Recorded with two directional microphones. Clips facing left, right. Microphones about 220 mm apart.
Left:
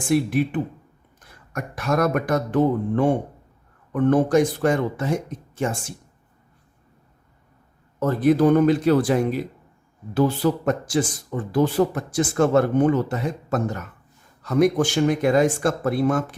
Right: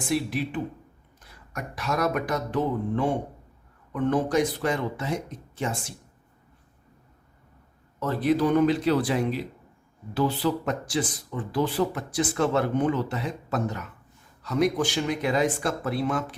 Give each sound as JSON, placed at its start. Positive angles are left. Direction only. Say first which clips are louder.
{"t": 0.1, "sound": "speech", "louder": "left 7 dB", "side_deg": 55}
{"t": 7.9, "sound": "speech", "louder": "left 5 dB", "side_deg": 45}